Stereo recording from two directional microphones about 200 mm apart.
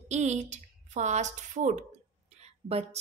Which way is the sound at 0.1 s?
35° right (ahead or behind).